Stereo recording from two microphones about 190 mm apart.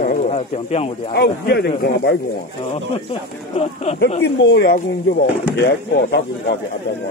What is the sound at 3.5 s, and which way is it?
Speech, 35° left (ahead or behind).